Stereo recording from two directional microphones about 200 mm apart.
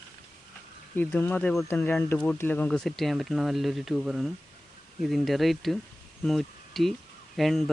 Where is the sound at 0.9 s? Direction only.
10° left (ahead or behind).